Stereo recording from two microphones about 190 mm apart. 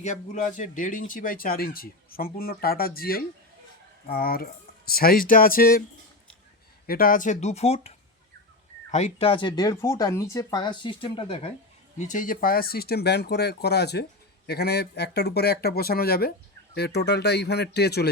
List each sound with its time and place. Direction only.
0.0 s speech: 40° left (ahead or behind)
6.8 s speech: 50° left (ahead or behind)
7.4 s speech: 35° left (ahead or behind)
11.9 s speech: 40° left (ahead or behind); by 18.1 s 60° left (ahead or behind)